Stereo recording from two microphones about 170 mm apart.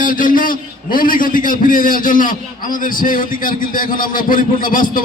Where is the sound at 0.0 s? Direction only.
50° left (ahead or behind).